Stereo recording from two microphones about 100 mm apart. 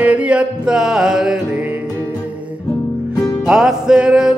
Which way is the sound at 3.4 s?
5° right (ahead or behind).